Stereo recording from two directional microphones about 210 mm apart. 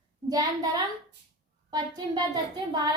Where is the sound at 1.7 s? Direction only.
20° right (ahead or behind).